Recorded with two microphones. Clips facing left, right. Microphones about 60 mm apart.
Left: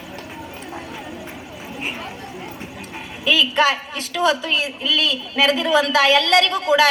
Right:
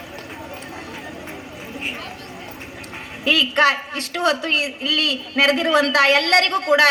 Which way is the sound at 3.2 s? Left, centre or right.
Right.